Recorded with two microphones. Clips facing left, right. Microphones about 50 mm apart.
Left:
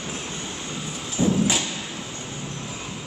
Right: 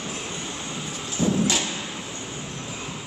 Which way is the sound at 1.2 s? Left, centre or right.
Centre.